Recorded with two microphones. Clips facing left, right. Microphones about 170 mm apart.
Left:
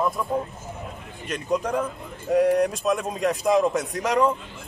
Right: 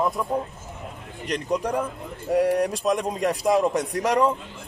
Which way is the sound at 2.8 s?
15° right (ahead or behind).